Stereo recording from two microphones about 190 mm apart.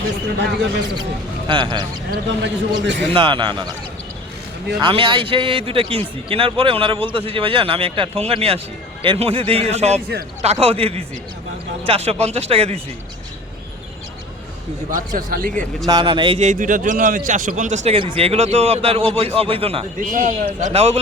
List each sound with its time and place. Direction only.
1.5 s a man's voice: 25° right (ahead or behind)
2.0 s speech: 65° right (ahead or behind)
3.1 s a man's voice: 25° right (ahead or behind)
4.8 s a man's voice: 25° right (ahead or behind)
14.8 s a man's voice: 45° right (ahead or behind)
15.9 s a man's voice: 25° right (ahead or behind); by 17.7 s 40° right (ahead or behind)
17.8 s a man's voice: 30° right (ahead or behind)
20.0 s a man's voice: 45° right (ahead or behind)